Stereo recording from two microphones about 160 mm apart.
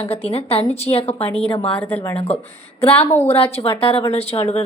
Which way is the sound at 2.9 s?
15° left (ahead or behind).